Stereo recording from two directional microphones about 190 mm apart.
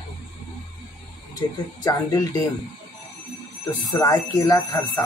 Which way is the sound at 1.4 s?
20° left (ahead or behind).